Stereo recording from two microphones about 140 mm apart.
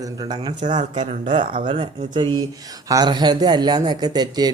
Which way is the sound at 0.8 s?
60° right (ahead or behind).